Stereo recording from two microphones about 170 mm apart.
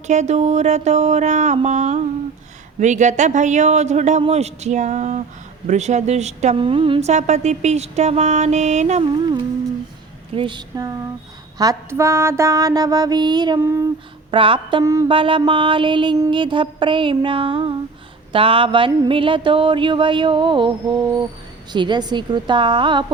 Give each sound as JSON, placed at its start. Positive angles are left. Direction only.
{"t": 0.1, "sound": "speech", "side_deg": -45}
{"t": 10.3, "sound": "mantra", "side_deg": -30}
{"t": 14.3, "sound": "mantra", "side_deg": -30}